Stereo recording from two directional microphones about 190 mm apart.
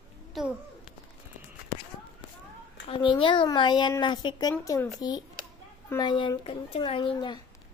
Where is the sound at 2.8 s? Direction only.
25° left (ahead or behind).